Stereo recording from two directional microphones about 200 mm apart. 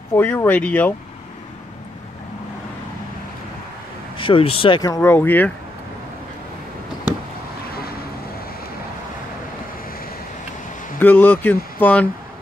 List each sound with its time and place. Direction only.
0.1 s speech: 10° left (ahead or behind)
4.2 s speech: 25° left (ahead or behind); by 5.5 s 10° left (ahead or behind)
11.0 s speech: 10° left (ahead or behind)